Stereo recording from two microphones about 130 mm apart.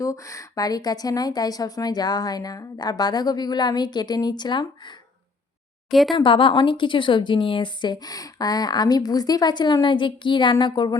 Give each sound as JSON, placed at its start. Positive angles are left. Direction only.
{"t": 0.0, "sound": "a woman's voice", "side_deg": 25}
{"t": 5.9, "sound": "speech", "side_deg": 0}
{"t": 6.1, "sound": "a woman's voice", "side_deg": 40}